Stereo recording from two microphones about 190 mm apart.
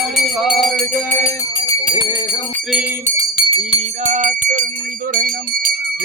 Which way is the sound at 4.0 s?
40° right (ahead or behind).